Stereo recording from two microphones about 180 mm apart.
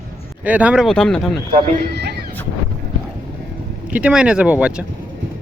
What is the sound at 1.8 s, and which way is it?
Speech, 65° right (ahead or behind).